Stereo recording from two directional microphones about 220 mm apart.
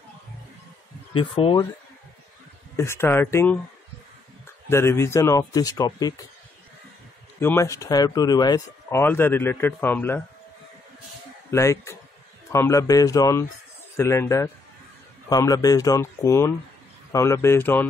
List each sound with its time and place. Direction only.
1.1 s speech: 25° left (ahead or behind)
4.6 s speech: 10° left (ahead or behind)
7.3 s speech: 10° left (ahead or behind)
11.5 s speech: 15° left (ahead or behind)